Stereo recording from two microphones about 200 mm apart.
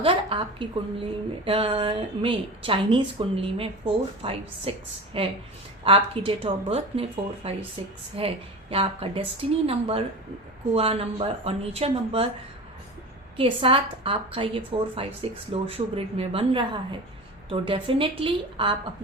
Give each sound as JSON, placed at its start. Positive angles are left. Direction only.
{"t": 0.0, "sound": "a woman's voice", "side_deg": -25}
{"t": 13.3, "sound": "a woman's voice", "side_deg": -25}